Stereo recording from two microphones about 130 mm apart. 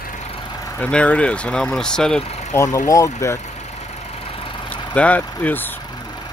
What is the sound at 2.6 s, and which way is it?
Speech, 25° left (ahead or behind).